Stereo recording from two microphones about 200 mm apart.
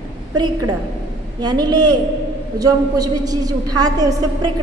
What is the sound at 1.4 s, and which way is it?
A woman's voice, 20° right (ahead or behind).